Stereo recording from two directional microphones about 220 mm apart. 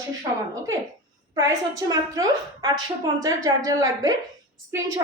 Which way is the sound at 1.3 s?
15° right (ahead or behind).